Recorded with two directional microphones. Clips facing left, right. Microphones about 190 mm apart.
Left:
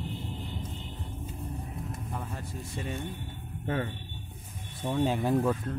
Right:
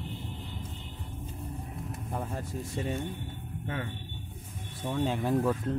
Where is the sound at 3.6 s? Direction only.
40° left (ahead or behind).